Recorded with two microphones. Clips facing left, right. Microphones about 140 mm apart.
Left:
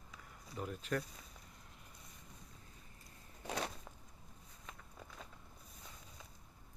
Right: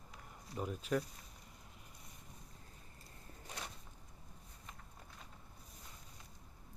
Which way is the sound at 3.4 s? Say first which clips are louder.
Left 9 dB; 90° left.